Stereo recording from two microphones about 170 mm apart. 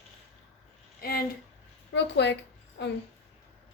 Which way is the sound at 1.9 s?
90° left.